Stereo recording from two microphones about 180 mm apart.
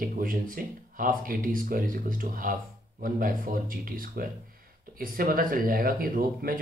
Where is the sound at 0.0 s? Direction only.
50° right (ahead or behind).